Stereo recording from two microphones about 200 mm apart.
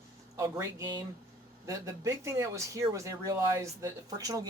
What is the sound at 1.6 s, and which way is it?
Speech, 15° right (ahead or behind).